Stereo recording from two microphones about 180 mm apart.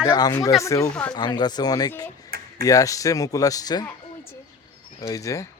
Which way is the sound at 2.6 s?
20° left (ahead or behind).